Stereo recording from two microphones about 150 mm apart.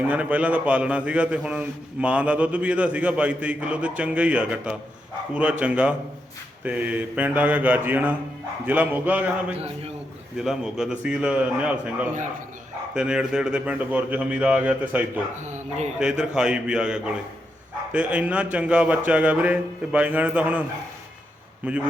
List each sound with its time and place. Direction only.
0.1 s a man's voice: 10° right (ahead or behind)
15.4 s a man's voice: 50° right (ahead or behind)
16.0 s a man's voice: 5° right (ahead or behind)